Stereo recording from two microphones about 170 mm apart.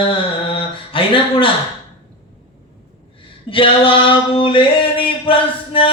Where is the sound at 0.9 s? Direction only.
30° left (ahead or behind).